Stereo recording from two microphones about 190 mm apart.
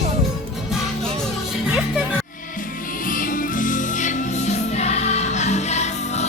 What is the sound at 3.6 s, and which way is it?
Music, 40° left (ahead or behind).